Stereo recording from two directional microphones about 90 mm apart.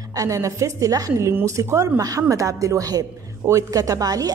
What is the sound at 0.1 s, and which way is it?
Speech, 40° right (ahead or behind).